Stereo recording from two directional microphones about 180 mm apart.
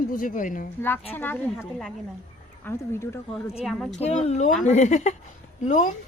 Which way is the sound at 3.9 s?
40° left (ahead or behind).